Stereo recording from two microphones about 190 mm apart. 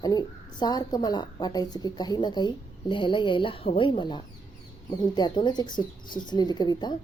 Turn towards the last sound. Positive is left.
turn(degrees=20)  # may be behind; listen again after turning